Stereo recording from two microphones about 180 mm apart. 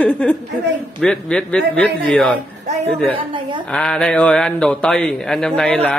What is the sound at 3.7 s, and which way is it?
A man's voice, 5° left (ahead or behind).